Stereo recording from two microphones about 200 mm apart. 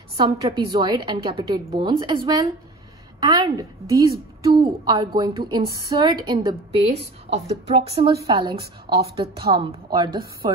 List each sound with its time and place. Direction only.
0.2 s a woman's voice: 20° right (ahead or behind)